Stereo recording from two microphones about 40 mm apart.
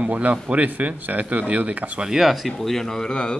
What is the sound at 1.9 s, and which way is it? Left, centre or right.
Speech, centre.